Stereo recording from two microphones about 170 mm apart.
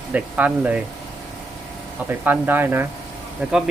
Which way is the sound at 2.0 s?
10° right (ahead or behind).